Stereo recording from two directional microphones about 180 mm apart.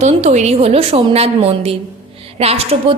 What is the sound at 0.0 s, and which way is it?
A woman's voice, 40° right (ahead or behind).